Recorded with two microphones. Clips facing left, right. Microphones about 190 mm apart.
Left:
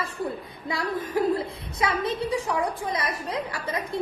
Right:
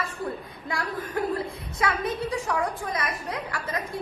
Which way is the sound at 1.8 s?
25° left (ahead or behind).